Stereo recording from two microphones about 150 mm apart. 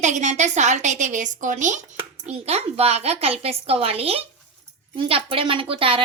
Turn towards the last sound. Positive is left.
turn(degrees=-35)  # may be behind; listen again after turning